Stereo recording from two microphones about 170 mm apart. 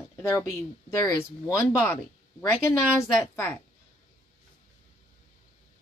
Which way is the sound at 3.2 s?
10° left (ahead or behind).